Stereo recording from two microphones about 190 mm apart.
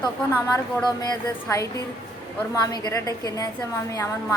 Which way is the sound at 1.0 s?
15° left (ahead or behind).